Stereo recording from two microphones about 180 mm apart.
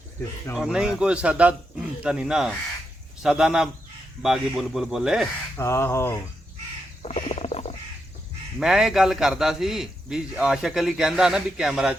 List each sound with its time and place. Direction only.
0.5 s a man's voice: 5° right (ahead or behind)
5.5 s speech: 15° left (ahead or behind)
7.0 s duck: 35° left (ahead or behind)
8.5 s a man's voice: 5° right (ahead or behind)